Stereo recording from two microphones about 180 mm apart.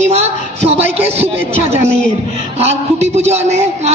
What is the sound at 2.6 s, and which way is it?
A man's voice, 35° right (ahead or behind).